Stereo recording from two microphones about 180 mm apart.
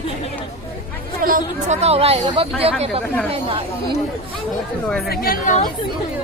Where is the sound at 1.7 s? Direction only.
35° right (ahead or behind).